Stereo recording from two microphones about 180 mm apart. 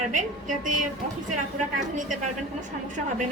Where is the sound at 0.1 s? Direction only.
45° right (ahead or behind).